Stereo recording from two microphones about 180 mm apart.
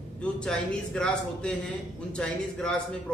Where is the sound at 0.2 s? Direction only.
5° left (ahead or behind).